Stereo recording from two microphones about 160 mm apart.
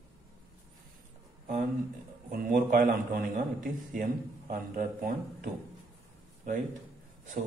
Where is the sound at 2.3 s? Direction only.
60° right (ahead or behind).